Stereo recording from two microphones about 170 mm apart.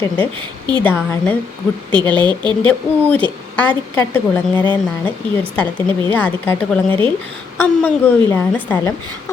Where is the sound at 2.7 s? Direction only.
10° left (ahead or behind).